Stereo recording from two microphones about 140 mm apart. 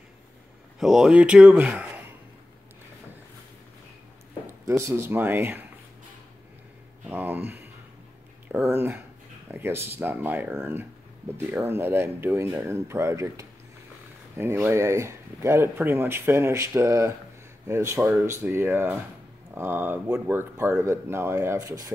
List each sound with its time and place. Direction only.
0.7 s speech: 5° right (ahead or behind)
4.5 s speech: 20° right (ahead or behind)
7.1 s speech: 15° right (ahead or behind)